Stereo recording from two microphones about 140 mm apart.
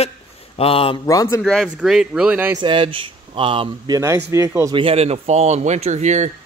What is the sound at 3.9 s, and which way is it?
Speech, 20° right (ahead or behind).